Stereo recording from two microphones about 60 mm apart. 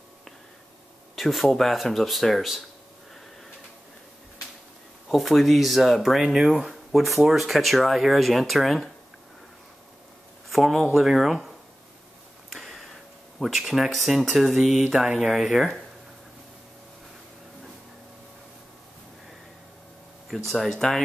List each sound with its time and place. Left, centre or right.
1.1 s speech: centre
5.1 s speech: centre
10.5 s speech: centre
12.4 s a sound: centre
13.4 s speech: centre
14.3 s mantra: centre
15.1 s speech: centre
20.4 s speech: centre